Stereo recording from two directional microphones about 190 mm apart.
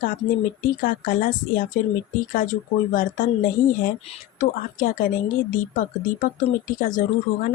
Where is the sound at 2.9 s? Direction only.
45° left (ahead or behind).